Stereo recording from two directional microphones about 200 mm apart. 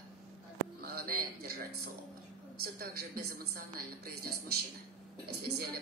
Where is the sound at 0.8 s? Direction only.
50° right (ahead or behind).